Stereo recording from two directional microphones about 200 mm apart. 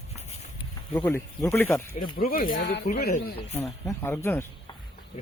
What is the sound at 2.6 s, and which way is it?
Speech, 55° left (ahead or behind).